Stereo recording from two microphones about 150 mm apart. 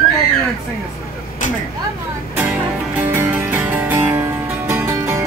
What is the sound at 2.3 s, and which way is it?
Music, 10° right (ahead or behind).